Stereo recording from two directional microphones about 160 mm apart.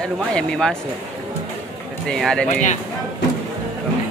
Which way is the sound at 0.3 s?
5° left (ahead or behind).